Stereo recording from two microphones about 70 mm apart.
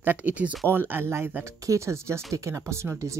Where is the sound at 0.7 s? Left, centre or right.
Right.